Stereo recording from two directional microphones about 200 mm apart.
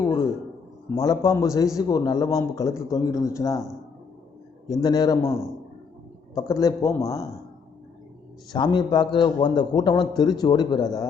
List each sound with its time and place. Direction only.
0.9 s speech: 15° left (ahead or behind)
4.7 s a man's voice: 20° left (ahead or behind)
8.5 s a man's voice: 20° left (ahead or behind)